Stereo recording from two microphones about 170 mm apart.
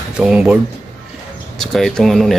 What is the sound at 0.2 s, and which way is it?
Speech, 5° right (ahead or behind).